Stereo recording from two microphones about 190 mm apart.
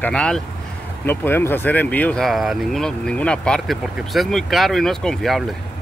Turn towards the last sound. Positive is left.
turn(degrees=0)  # may be behind; listen again after turning